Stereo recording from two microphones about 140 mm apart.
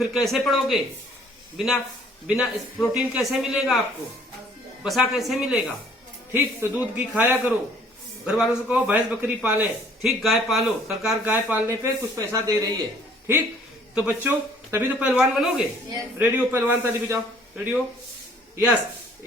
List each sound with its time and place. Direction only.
0.0 s a man's voice: centre (ahead or behind)
4.8 s a man's voice: centre (ahead or behind)
6.3 s a man's voice: 15° right (ahead or behind)
13.9 s a man's voice: 10° right (ahead or behind)
18.5 s speech: 10° right (ahead or behind)